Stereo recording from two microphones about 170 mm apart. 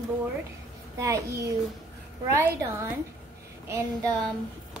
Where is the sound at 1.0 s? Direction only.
20° right (ahead or behind).